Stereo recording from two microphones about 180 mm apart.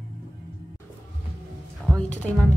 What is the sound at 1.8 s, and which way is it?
Music, 5° left (ahead or behind).